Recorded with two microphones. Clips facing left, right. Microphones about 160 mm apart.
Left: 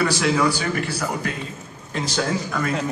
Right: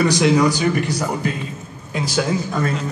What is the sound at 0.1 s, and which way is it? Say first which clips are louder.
Speech: right 5 dB; 15° right (ahead or behind).